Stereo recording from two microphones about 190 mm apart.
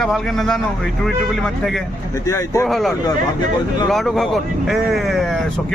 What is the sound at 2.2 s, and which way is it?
Speech, 20° left (ahead or behind).